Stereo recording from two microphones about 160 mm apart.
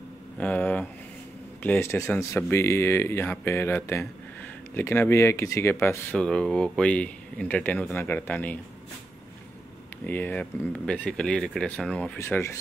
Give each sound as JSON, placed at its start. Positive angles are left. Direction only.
{"t": 0.4, "sound": "speech", "side_deg": 10}
{"t": 10.0, "sound": "speech", "side_deg": 10}